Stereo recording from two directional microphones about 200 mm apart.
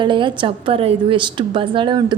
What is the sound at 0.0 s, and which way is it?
A woman's voice, 25° right (ahead or behind).